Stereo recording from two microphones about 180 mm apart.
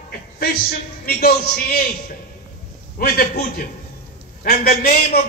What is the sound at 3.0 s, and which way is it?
A man's voice, 55° left (ahead or behind).